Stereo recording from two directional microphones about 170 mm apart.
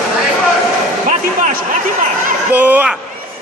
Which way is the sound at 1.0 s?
50° right (ahead or behind).